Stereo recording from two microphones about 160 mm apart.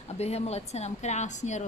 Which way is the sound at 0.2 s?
40° left (ahead or behind).